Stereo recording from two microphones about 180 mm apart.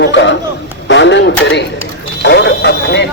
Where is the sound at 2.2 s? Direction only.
70° left (ahead or behind).